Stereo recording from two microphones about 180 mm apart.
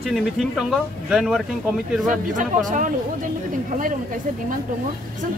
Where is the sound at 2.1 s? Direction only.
45° right (ahead or behind).